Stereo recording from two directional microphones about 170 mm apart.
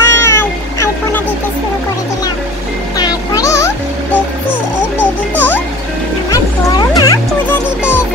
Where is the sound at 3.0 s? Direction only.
20° left (ahead or behind).